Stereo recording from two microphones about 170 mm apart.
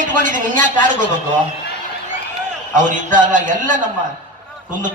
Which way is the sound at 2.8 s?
50° right (ahead or behind).